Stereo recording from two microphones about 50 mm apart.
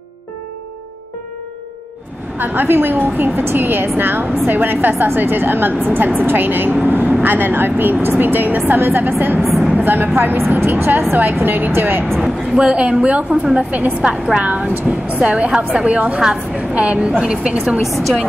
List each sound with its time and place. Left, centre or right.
2.3 s a woman's voice: right
6.9 s vehicle: right
7.2 s a woman's voice: right
9.4 s vehicle: centre
9.8 s a woman's voice: right
12.2 s a woman's voice: centre